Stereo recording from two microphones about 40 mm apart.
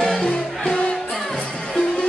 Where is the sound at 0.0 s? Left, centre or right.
Centre.